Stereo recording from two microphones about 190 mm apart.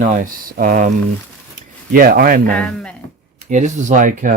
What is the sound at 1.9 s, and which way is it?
Speech, 50° right (ahead or behind).